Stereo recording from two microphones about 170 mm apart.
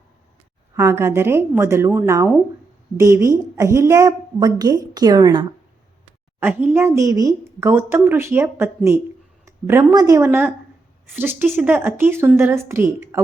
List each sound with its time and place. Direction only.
0.8 s a woman's voice: 15° right (ahead or behind)
6.4 s speech: 10° right (ahead or behind)
10.2 s speech: 10° right (ahead or behind)